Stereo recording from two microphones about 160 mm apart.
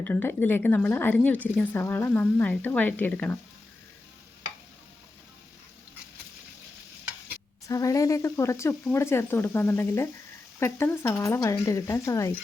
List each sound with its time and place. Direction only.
0.0 s a woman's voice: 10° left (ahead or behind)
7.7 s a woman's voice: 20° left (ahead or behind)